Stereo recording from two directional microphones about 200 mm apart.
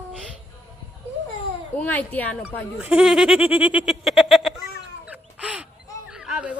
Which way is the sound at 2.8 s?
5° right (ahead or behind).